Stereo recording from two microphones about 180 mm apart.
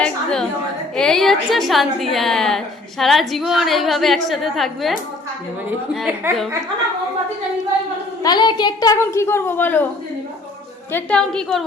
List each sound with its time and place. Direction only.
0.0 s a sound: 5° left (ahead or behind)
0.9 s a woman's voice: 5° left (ahead or behind)
8.2 s a woman's voice: 25° left (ahead or behind)
10.9 s a woman's voice: 5° left (ahead or behind)